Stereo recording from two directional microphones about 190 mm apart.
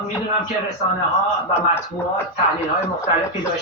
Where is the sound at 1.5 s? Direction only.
10° left (ahead or behind).